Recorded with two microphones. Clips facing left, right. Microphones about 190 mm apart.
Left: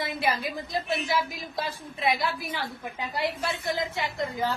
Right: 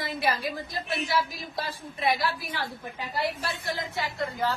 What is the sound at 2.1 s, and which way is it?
Speech, 20° left (ahead or behind).